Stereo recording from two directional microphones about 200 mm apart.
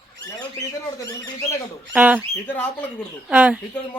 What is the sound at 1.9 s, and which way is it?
Speech, 10° right (ahead or behind).